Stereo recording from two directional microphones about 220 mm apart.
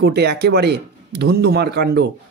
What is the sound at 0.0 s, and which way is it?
A man's voice, 50° right (ahead or behind).